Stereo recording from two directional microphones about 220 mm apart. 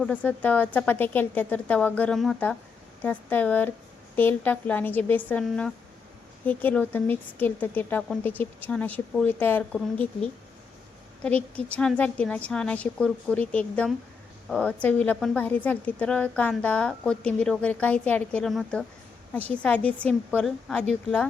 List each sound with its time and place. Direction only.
0.0 s a woman's voice: 5° left (ahead or behind)